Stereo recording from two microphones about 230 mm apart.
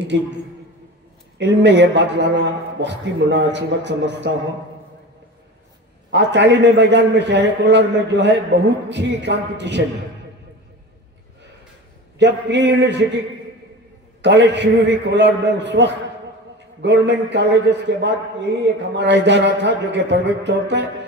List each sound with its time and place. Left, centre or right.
0.1 s a man's voice: right
1.4 s a man's voice: right
6.0 s a man's voice: right
12.2 s a man's voice: right
14.2 s a man's voice: right